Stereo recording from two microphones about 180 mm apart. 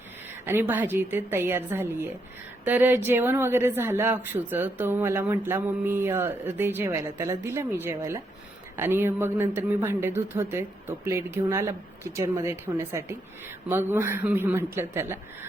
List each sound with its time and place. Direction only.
0.4 s speech: 10° right (ahead or behind)